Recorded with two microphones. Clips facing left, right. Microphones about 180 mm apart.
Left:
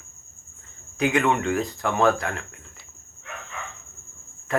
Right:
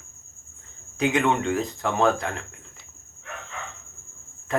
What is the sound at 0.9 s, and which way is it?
Speech, 25° right (ahead or behind).